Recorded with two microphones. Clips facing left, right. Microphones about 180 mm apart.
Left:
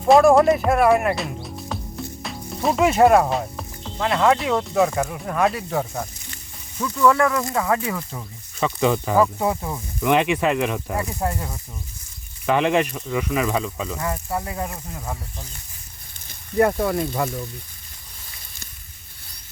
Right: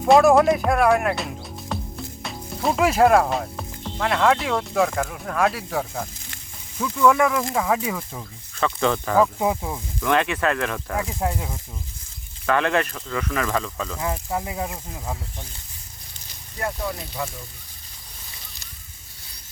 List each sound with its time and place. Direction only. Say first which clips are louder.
0.1 s speech: left 1 dB; centre (ahead or behind)
8.5 s speech: left 2 dB; 10° left (ahead or behind)
9.4 s speech: even; 10° right (ahead or behind)
10.0 s speech: left 3 dB; 15° left (ahead or behind)
11.2 s speech: even; 10° right (ahead or behind)
12.5 s speech: left 2 dB; 15° left (ahead or behind)
14.0 s speech: right 1 dB; 10° right (ahead or behind)
16.2 s a sound: left 11 dB; 65° left (ahead or behind)
17.0 s speech: left 7 dB; 55° left (ahead or behind)